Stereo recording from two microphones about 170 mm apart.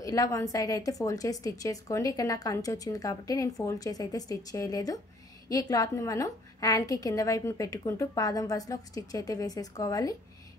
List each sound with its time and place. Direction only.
0.0 s a woman's voice: 20° left (ahead or behind)